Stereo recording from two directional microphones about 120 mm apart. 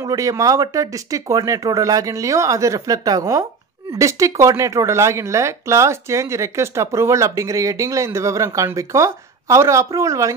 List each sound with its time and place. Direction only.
0.0 s speech: 30° right (ahead or behind)